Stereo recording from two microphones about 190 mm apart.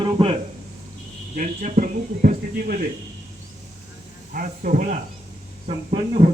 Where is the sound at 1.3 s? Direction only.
45° right (ahead or behind).